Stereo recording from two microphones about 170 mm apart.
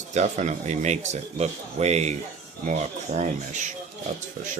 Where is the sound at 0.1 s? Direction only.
45° right (ahead or behind).